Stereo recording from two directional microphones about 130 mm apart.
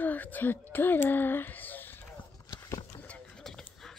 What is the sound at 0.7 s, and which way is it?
Speech, 15° left (ahead or behind).